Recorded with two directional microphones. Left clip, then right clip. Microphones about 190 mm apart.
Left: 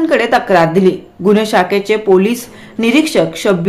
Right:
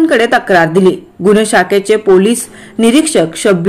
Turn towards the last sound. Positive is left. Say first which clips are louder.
# right 2 dB
turn(degrees=-20)  # may be behind; listen again after turning